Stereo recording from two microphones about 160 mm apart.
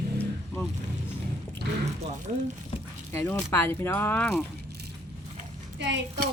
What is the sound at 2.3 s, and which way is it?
Speech, 50° right (ahead or behind).